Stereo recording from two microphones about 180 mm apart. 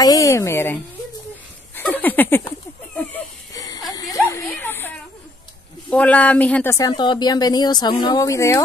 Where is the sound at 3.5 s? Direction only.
20° left (ahead or behind).